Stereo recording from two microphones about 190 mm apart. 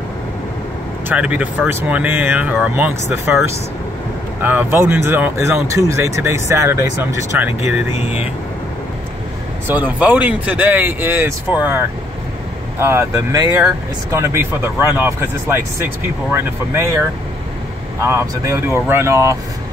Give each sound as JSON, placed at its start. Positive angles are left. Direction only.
{"t": 1.0, "sound": "speech", "side_deg": -5}
{"t": 9.7, "sound": "speech", "side_deg": -10}
{"t": 18.0, "sound": "speech", "side_deg": -15}